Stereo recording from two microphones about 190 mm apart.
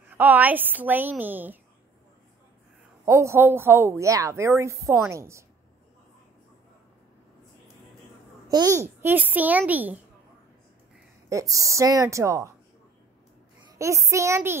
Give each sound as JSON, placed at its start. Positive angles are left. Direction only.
{"t": 0.1, "sound": "a woman's voice", "side_deg": -10}
{"t": 3.1, "sound": "a woman's voice", "side_deg": -15}
{"t": 8.5, "sound": "a woman's voice", "side_deg": -20}
{"t": 11.2, "sound": "a woman's voice", "side_deg": -15}
{"t": 13.7, "sound": "a woman's voice", "side_deg": -15}